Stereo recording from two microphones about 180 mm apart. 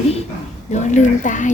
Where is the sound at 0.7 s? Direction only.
40° left (ahead or behind).